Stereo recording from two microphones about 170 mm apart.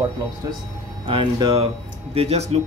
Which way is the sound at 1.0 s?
30° right (ahead or behind).